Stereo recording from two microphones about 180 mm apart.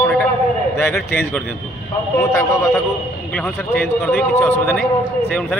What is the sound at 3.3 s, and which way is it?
Speech, 5° left (ahead or behind).